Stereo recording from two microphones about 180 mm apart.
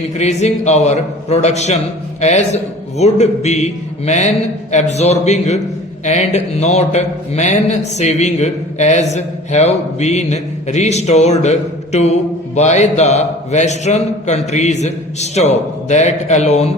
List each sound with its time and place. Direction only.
0.2 s speech: 40° left (ahead or behind)